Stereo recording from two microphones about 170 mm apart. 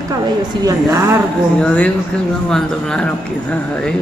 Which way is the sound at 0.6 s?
15° right (ahead or behind).